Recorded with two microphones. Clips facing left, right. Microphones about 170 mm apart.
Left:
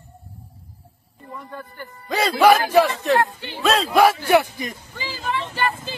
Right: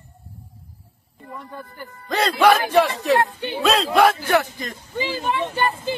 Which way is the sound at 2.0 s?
10° left (ahead or behind).